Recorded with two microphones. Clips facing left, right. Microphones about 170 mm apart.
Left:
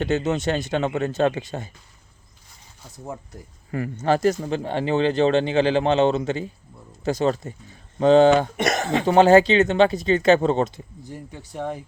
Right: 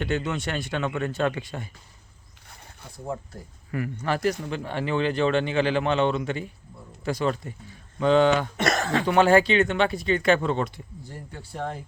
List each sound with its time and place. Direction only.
0.2 s speech: 45° left (ahead or behind)
0.4 s speech: 20° left (ahead or behind)
3.7 s speech: 30° left (ahead or behind)
8.5 s speech: 20° left (ahead or behind)
10.3 s speech: 35° left (ahead or behind)
10.6 s speech: 20° left (ahead or behind)